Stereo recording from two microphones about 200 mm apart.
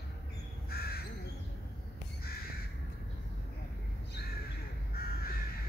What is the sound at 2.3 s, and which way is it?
Crow, 50° left (ahead or behind).